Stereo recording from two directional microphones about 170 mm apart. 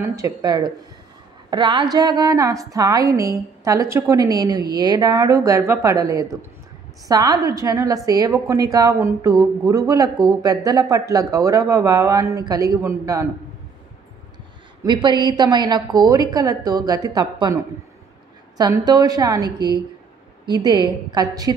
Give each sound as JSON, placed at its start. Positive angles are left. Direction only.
{"t": 0.0, "sound": "a woman's voice", "side_deg": -20}
{"t": 14.8, "sound": "a woman's voice", "side_deg": -25}
{"t": 18.6, "sound": "a woman's voice", "side_deg": -25}